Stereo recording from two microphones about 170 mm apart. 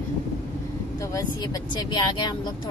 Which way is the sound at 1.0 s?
20° left (ahead or behind).